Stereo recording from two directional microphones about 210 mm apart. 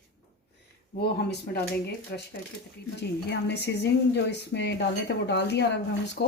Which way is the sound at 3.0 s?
55° left (ahead or behind).